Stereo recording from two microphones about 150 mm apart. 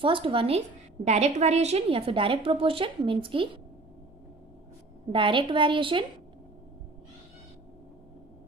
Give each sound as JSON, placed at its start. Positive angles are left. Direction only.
{"t": 0.0, "sound": "a woman's voice", "side_deg": -35}
{"t": 5.1, "sound": "a woman's voice", "side_deg": -35}